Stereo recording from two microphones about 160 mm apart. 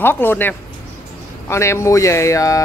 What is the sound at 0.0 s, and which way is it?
Speech, 15° left (ahead or behind).